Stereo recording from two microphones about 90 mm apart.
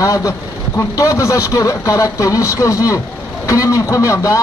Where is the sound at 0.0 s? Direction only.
40° left (ahead or behind).